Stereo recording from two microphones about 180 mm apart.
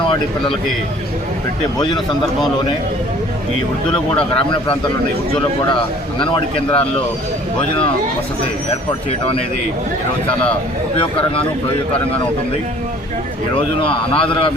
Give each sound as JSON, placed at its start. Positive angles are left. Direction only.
{"t": 1.8, "sound": "a man's voice", "side_deg": 25}
{"t": 3.8, "sound": "a man's voice", "side_deg": 25}
{"t": 6.1, "sound": "a man's voice", "side_deg": 25}
{"t": 8.9, "sound": "speech", "side_deg": 30}
{"t": 11.0, "sound": "speech", "side_deg": 30}
{"t": 13.5, "sound": "a man's voice", "side_deg": 30}